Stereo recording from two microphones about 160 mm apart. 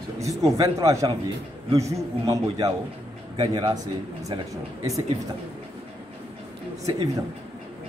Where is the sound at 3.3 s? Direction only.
35° right (ahead or behind).